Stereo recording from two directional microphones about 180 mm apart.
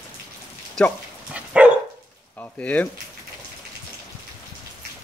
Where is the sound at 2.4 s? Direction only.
10° left (ahead or behind).